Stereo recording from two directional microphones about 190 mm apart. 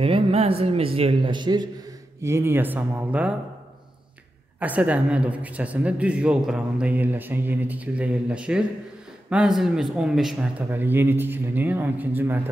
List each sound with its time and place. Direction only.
0.0 s a woman's voice: 30° right (ahead or behind); by 3.3 s 5° right (ahead or behind)
4.6 s a woman's voice: 10° right (ahead or behind)